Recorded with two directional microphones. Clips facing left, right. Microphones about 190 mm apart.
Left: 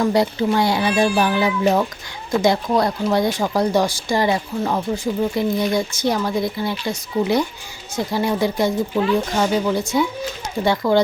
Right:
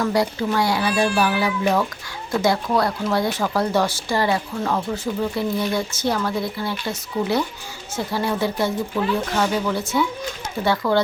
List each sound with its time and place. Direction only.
0.0 s speech: 25° left (ahead or behind)